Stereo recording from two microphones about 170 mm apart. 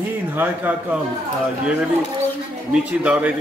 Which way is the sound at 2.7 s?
10° right (ahead or behind).